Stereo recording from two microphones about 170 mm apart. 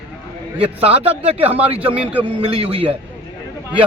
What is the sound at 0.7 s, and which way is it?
Speech, 35° right (ahead or behind).